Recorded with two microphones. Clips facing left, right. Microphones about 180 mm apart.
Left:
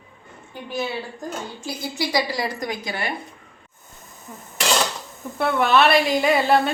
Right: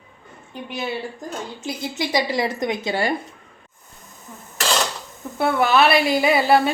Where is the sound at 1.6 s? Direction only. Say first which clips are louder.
Right 1 dB; 20° right (ahead or behind).